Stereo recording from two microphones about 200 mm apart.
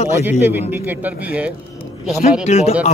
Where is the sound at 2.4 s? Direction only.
30° left (ahead or behind).